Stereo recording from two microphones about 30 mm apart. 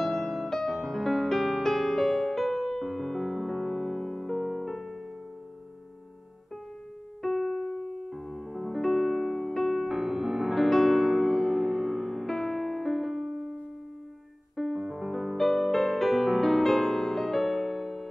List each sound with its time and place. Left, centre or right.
0.0 s music: centre
7.3 s piano: centre
8.1 s music: centre
8.7 s music: centre
9.8 s music: centre
10.5 s music: centre
13.3 s music: centre
14.8 s music: centre